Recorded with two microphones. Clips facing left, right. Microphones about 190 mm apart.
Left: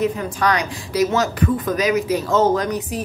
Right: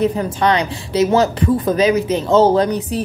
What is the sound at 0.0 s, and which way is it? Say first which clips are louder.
Speech: right 4 dB; 25° right (ahead or behind).